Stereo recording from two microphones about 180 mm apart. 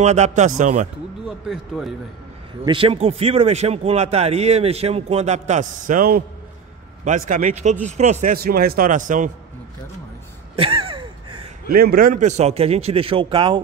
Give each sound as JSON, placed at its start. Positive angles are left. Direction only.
{"t": 0.0, "sound": "a man's voice", "side_deg": -40}
{"t": 1.2, "sound": "speech", "side_deg": 0}
{"t": 2.6, "sound": "a man's voice", "side_deg": -30}
{"t": 10.5, "sound": "gasp", "side_deg": -30}
{"t": 11.7, "sound": "a man's voice", "side_deg": -55}